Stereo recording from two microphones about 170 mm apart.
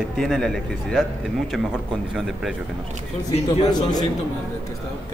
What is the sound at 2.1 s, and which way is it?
Speech, centre (ahead or behind).